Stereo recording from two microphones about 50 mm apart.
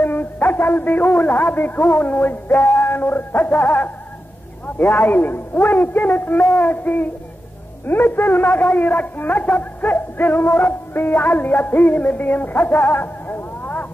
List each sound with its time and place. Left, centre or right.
0.0 s a man's voice: left
2.7 s music: left
3.5 s a man's voice: left